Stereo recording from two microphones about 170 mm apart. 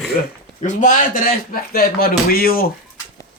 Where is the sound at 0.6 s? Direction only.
50° left (ahead or behind).